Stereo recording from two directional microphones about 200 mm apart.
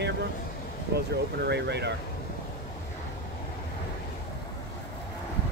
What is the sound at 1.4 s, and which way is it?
Speech, 55° right (ahead or behind).